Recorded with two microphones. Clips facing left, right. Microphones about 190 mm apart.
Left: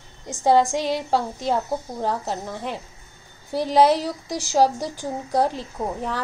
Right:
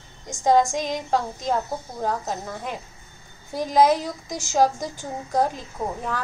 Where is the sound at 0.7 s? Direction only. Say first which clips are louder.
Left 3 dB; 15° right (ahead or behind).